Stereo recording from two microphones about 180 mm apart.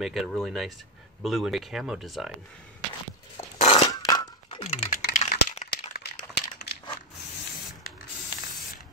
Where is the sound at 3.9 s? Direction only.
20° left (ahead or behind).